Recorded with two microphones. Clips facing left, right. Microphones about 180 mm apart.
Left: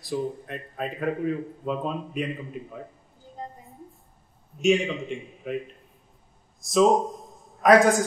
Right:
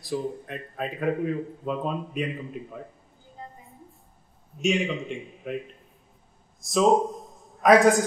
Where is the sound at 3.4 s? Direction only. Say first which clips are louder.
Left 5 dB; 40° left (ahead or behind).